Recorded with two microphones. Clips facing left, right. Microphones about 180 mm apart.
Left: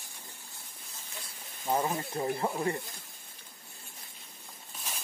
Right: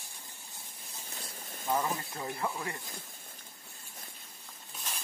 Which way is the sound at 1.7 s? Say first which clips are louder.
Left 2 dB; 30° left (ahead or behind).